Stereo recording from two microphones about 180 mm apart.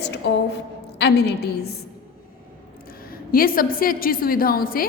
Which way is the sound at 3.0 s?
55° left (ahead or behind).